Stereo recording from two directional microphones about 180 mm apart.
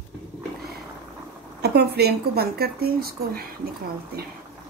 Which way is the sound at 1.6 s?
65° right (ahead or behind).